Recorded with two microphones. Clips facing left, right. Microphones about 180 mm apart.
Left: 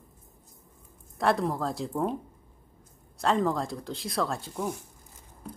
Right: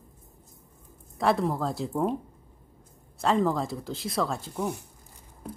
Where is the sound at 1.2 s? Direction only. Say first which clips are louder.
Right 1 dB; centre (ahead or behind).